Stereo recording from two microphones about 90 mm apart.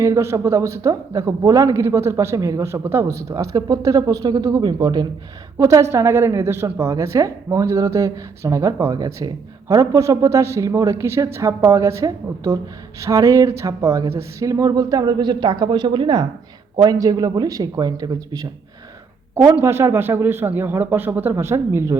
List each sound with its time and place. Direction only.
0.0 s a man's voice: 30° right (ahead or behind); by 5.0 s 50° right (ahead or behind)
5.5 s a man's voice: 35° right (ahead or behind); by 16.2 s 60° right (ahead or behind)
16.7 s speech: 45° right (ahead or behind)
19.5 s speech: 30° right (ahead or behind)